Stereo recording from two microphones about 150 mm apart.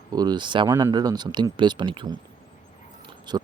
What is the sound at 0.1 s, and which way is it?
Speech, 25° right (ahead or behind).